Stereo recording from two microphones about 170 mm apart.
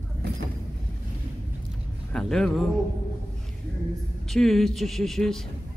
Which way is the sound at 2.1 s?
5° left (ahead or behind).